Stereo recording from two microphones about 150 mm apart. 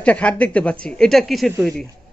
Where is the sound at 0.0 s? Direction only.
10° left (ahead or behind).